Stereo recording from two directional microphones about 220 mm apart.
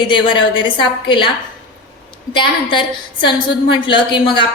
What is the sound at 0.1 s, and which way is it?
A woman's voice, 20° left (ahead or behind).